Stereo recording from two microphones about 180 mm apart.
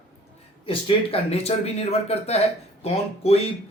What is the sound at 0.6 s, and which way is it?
A man's voice, 30° left (ahead or behind).